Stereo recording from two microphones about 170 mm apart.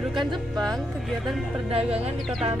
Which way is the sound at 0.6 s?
Centre (ahead or behind).